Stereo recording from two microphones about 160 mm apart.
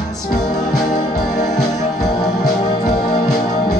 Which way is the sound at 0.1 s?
25° left (ahead or behind).